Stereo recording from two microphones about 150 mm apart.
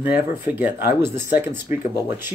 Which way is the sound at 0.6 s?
15° right (ahead or behind).